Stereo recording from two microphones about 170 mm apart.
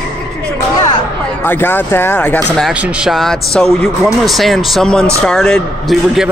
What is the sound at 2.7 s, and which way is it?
A man's voice, 5° right (ahead or behind).